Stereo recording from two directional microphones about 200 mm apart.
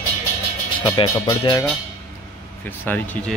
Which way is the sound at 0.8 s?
20° left (ahead or behind).